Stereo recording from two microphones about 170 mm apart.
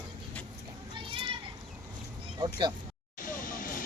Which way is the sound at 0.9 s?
30° right (ahead or behind).